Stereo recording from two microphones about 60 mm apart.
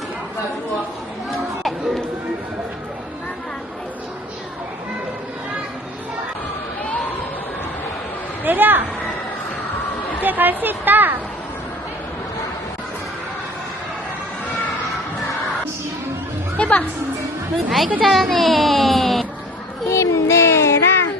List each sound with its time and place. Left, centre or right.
8.4 s speech: right
10.2 s a woman's voice: right
16.6 s music: left
17.7 s a sound: centre
19.9 s child singing: left